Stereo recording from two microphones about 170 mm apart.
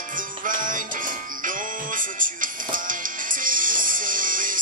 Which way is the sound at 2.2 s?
50° right (ahead or behind).